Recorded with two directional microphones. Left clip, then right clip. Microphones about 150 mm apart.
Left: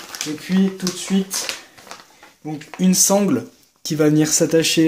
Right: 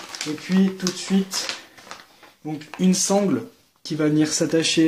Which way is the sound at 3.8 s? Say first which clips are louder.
Left 4 dB; 40° left (ahead or behind).